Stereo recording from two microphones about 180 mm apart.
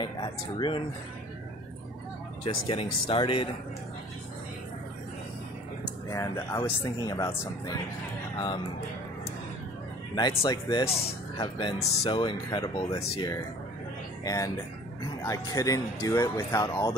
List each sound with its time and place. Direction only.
0.0 s speech: 25° left (ahead or behind)
2.4 s speech: 30° left (ahead or behind)
6.0 s speech: 20° left (ahead or behind)
10.1 s speech: 25° left (ahead or behind)